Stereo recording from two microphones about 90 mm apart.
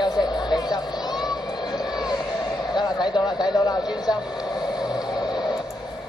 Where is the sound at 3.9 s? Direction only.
50° left (ahead or behind).